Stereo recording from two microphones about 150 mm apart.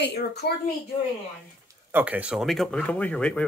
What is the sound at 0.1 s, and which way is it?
Speech, 90° left.